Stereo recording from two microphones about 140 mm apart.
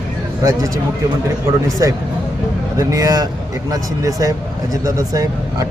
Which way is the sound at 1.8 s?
25° right (ahead or behind).